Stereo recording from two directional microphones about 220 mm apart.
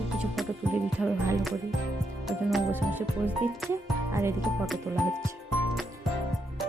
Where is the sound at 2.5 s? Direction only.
5° right (ahead or behind).